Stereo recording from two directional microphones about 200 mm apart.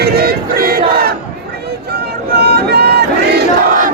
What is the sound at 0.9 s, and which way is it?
Battle cry, 50° right (ahead or behind).